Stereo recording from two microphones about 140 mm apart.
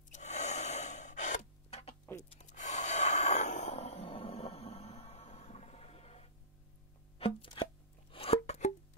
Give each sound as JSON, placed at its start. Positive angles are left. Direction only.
{"t": 0.1, "sound": "gasp", "side_deg": 55}
{"t": 2.2, "sound": "snort", "side_deg": 55}
{"t": 7.2, "sound": "chopping", "side_deg": 40}
{"t": 8.1, "sound": "music", "side_deg": 45}